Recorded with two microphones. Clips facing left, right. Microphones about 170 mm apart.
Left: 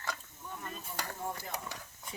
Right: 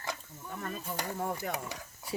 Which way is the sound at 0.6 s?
60° right (ahead or behind).